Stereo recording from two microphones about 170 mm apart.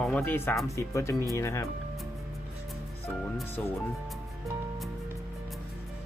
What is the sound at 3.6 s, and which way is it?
Speech, 10° left (ahead or behind).